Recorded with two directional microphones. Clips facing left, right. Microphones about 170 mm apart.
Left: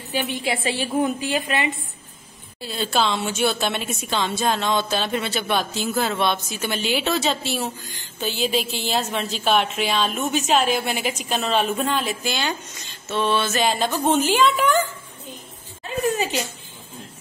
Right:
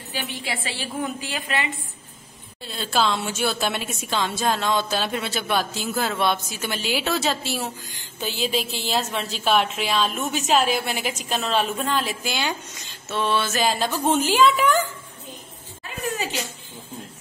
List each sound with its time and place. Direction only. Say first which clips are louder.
0.1 s a woman's voice: left 6 dB; 15° left (ahead or behind)
2.6 s a woman's voice: left 1 dB; 5° left (ahead or behind)